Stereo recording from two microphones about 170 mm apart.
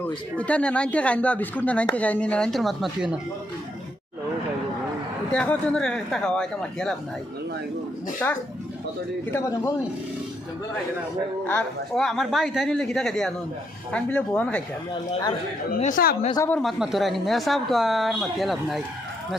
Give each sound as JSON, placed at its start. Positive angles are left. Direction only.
{"t": 0.3, "sound": "speech", "side_deg": 5}
{"t": 5.3, "sound": "speech", "side_deg": 5}
{"t": 8.2, "sound": "speech", "side_deg": 10}
{"t": 11.4, "sound": "speech", "side_deg": 5}
{"t": 15.8, "sound": "speech", "side_deg": 55}
{"t": 16.5, "sound": "speech", "side_deg": 0}